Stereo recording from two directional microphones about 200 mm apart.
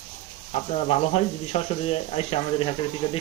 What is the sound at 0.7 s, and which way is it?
Speech, 30° left (ahead or behind).